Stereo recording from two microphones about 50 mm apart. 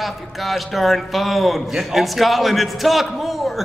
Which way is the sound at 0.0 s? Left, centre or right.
Centre.